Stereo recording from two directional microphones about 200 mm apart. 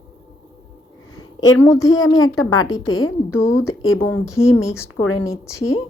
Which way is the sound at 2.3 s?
90° left.